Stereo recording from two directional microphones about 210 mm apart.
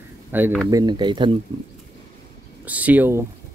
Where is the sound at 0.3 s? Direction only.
10° right (ahead or behind).